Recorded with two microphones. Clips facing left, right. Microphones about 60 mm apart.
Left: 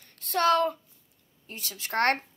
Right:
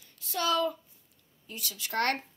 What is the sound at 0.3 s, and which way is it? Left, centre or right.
Speech, left.